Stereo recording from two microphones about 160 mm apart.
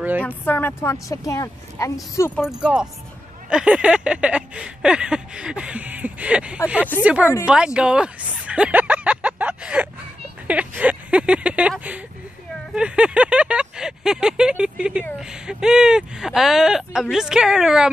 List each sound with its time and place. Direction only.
0.2 s speech: 10° left (ahead or behind)
2.3 s speech: 5° right (ahead or behind)
3.4 s a sound: 5° right (ahead or behind)
7.4 s speech: 5° right (ahead or behind)
10.4 s a sound: 10° right (ahead or behind)
12.7 s speech: 5° right (ahead or behind)